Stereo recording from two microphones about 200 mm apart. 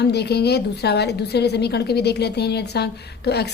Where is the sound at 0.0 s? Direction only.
55° left (ahead or behind).